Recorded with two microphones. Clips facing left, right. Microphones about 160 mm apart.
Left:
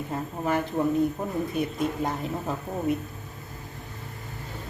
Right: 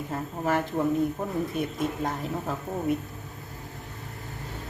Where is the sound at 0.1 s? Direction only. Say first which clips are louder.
Even; centre (ahead or behind).